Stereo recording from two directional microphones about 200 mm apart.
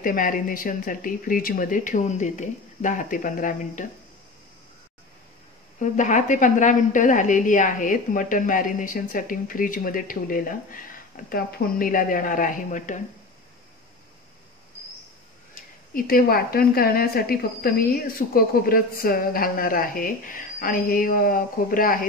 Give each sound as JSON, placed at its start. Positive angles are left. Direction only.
{"t": 0.0, "sound": "speech", "side_deg": 45}
{"t": 5.8, "sound": "a woman's voice", "side_deg": 40}
{"t": 15.9, "sound": "speech", "side_deg": 45}